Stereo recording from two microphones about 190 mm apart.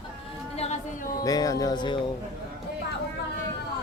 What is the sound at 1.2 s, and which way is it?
Speech, 20° left (ahead or behind).